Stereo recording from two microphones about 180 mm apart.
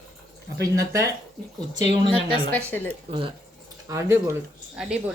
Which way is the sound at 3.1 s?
30° right (ahead or behind).